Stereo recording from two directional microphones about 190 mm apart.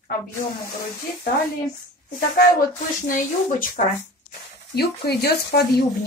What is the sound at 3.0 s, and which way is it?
Speech, 45° left (ahead or behind).